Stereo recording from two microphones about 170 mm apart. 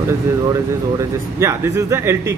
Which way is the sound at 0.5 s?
20° right (ahead or behind).